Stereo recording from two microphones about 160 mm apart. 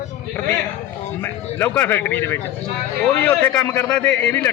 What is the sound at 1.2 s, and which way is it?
Speech, 15° left (ahead or behind).